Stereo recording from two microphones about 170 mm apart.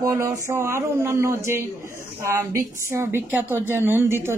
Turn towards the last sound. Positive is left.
turn(degrees=-15)  # may be behind; listen again after turning